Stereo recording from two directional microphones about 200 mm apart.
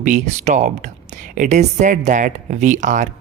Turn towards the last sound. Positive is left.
turn(degrees=-40)  # may be behind; listen again after turning